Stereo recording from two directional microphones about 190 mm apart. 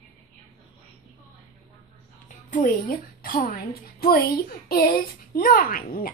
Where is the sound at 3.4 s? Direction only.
50° left (ahead or behind).